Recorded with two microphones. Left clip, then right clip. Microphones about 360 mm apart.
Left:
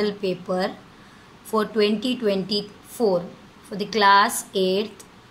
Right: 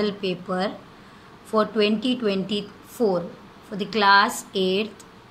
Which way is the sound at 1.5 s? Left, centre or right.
Centre.